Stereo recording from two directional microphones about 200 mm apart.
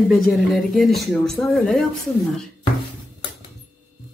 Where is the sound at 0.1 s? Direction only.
Centre (ahead or behind).